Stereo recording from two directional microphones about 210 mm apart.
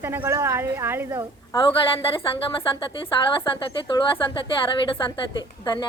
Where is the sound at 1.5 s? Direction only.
25° left (ahead or behind).